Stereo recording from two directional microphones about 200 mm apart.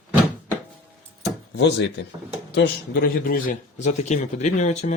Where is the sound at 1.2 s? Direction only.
60° left (ahead or behind).